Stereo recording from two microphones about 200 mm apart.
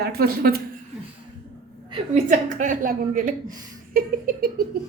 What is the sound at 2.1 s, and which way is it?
A woman's voice, 40° right (ahead or behind).